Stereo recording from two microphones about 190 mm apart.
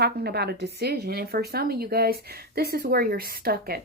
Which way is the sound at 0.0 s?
55° right (ahead or behind).